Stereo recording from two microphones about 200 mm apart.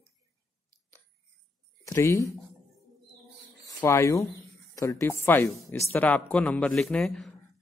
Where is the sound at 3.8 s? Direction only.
15° left (ahead or behind).